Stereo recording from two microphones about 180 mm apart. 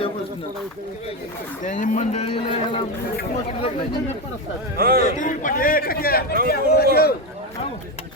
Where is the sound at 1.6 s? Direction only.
45° left (ahead or behind); by 2.9 s 30° left (ahead or behind).